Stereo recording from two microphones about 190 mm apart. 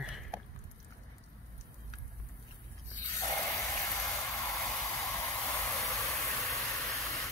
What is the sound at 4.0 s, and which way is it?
Vehicle, centre (ahead or behind).